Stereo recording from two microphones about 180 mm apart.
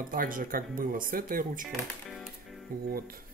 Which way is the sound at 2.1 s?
Centre (ahead or behind).